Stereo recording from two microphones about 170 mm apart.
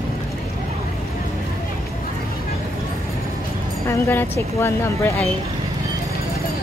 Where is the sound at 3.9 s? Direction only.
15° left (ahead or behind).